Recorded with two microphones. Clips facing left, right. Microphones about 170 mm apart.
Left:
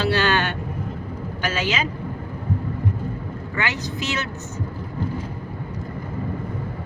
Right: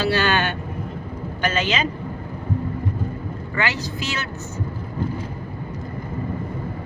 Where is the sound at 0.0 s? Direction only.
5° right (ahead or behind).